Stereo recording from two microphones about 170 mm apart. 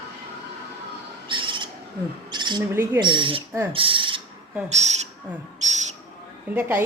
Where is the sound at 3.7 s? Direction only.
30° right (ahead or behind).